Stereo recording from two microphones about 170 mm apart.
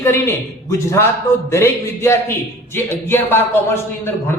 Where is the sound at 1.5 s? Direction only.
15° left (ahead or behind).